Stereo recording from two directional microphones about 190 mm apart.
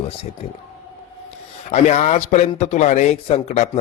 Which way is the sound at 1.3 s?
35° left (ahead or behind).